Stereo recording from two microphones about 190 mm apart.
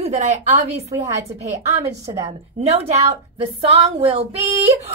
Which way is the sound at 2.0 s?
15° right (ahead or behind).